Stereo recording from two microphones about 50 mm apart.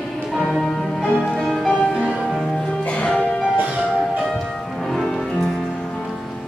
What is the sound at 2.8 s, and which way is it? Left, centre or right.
Music, left.